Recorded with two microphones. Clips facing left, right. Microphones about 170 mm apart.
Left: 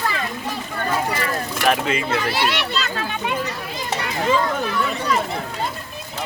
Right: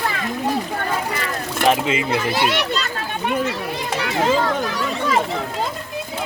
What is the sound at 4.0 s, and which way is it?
Children playing, 80° right.